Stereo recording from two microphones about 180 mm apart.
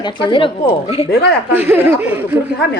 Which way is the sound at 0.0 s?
25° left (ahead or behind).